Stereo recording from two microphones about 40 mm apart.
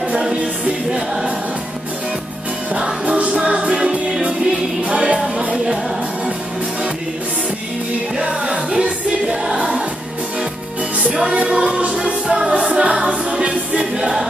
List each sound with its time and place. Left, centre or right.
0.2 s music: right
3.2 s music: right
4.8 s music: right
8.2 s music: right
11.5 s music: right